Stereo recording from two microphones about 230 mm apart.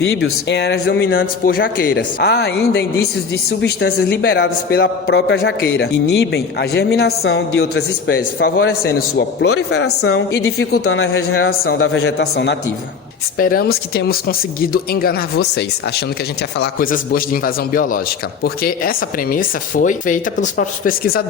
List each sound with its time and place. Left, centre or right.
0.0 s a man's voice: left
10.0 s a woman's voice: left
10.3 s a man's voice: left